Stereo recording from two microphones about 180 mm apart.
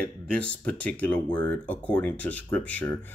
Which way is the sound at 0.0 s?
5° left (ahead or behind).